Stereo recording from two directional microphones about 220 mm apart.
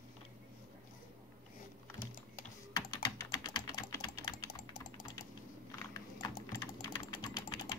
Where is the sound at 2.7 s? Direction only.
15° left (ahead or behind).